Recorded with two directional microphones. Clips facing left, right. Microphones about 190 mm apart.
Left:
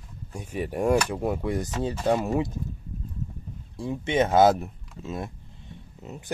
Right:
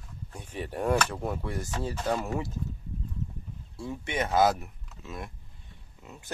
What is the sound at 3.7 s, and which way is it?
Speech, 20° left (ahead or behind).